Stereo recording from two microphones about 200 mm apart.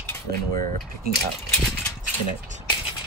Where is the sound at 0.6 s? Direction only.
45° right (ahead or behind).